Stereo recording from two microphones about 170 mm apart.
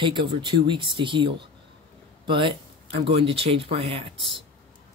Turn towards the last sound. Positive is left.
turn(degrees=-30)  # may be behind; listen again after turning